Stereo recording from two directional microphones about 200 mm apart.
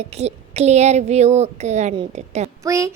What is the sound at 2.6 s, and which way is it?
Speech, 15° right (ahead or behind).